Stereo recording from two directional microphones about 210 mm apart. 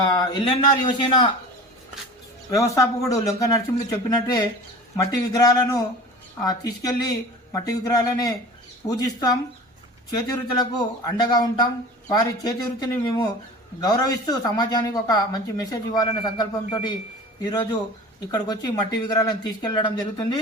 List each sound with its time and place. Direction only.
0.2 s speech: 20° left (ahead or behind)
2.5 s speech: 15° left (ahead or behind)